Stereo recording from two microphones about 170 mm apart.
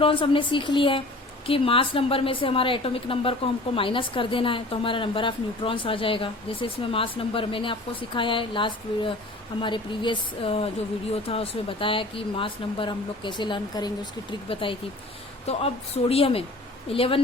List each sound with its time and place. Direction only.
0.0 s a woman's voice: 30° left (ahead or behind)